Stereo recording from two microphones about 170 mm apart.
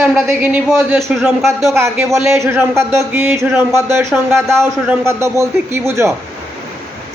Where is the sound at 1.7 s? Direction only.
15° right (ahead or behind).